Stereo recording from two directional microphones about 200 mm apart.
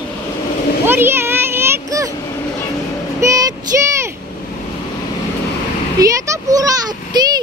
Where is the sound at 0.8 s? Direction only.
10° right (ahead or behind).